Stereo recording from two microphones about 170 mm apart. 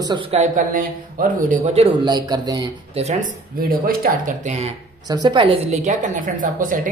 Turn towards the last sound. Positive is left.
turn(degrees=-50)  # may be behind; listen again after turning